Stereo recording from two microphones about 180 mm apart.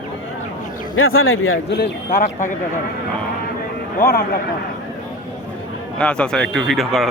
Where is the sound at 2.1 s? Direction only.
40° left (ahead or behind).